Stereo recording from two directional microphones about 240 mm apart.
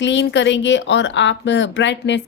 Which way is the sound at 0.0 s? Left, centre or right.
Left.